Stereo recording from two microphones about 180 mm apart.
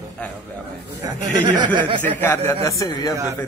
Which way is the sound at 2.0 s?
10° left (ahead or behind).